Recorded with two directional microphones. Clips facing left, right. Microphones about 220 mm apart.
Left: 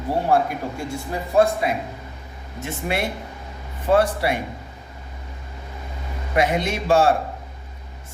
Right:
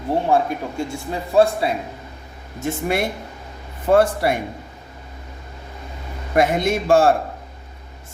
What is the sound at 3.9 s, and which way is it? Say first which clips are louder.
Speech: right 3 dB; 45° right (ahead or behind).